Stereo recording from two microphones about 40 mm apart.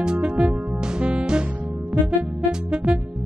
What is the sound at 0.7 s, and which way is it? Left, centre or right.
Music, centre.